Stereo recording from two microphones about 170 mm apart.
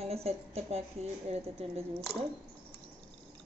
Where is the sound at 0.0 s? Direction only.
35° right (ahead or behind).